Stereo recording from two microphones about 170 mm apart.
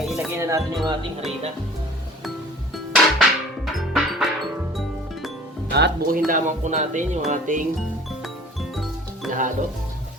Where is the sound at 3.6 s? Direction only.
Centre (ahead or behind).